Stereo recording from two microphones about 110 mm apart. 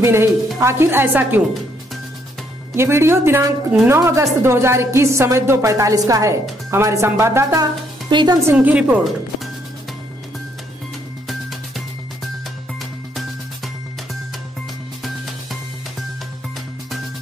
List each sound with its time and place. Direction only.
0.0 s a woman's voice: 25° right (ahead or behind)
2.7 s a woman's voice: 25° right (ahead or behind)
8.1 s a woman's voice: 45° right (ahead or behind)
8.5 s a woman's voice: 10° right (ahead or behind)